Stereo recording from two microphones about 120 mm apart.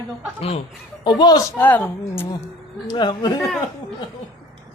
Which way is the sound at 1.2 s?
30° left (ahead or behind).